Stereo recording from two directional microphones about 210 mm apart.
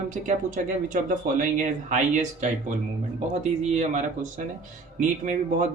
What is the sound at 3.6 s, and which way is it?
Speech, 35° right (ahead or behind).